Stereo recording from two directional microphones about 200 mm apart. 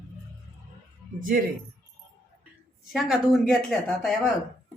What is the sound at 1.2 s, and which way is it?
Speech, 45° right (ahead or behind).